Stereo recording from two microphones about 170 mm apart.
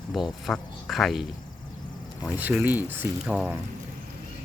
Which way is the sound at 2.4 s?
10° right (ahead or behind).